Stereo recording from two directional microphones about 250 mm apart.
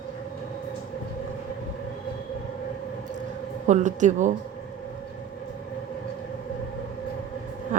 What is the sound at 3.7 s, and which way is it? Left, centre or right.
Speech, right.